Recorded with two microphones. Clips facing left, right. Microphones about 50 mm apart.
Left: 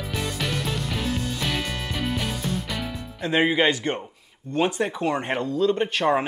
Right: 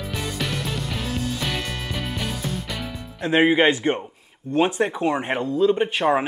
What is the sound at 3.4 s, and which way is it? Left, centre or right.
Speech, centre.